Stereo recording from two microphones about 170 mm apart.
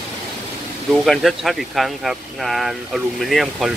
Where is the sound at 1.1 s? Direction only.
Centre (ahead or behind).